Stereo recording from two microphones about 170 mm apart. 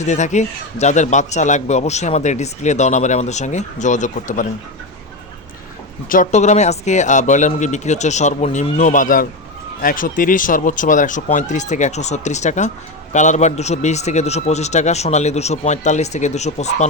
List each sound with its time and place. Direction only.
0.0 s a man's voice: 45° left (ahead or behind)
6.1 s a man's voice: 45° left (ahead or behind)